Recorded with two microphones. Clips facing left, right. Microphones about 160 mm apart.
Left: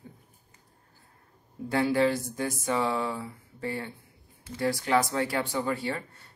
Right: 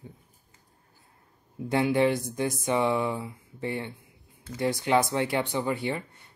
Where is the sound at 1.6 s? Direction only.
20° right (ahead or behind).